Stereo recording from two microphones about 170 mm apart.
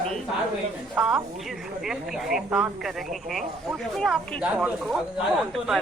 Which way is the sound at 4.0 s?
5° right (ahead or behind).